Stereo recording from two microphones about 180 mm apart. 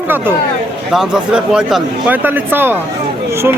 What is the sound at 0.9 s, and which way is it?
Speech, 5° right (ahead or behind).